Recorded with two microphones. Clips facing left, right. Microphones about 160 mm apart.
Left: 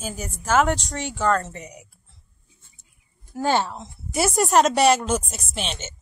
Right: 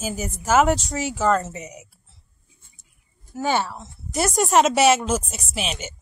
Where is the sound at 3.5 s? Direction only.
15° left (ahead or behind).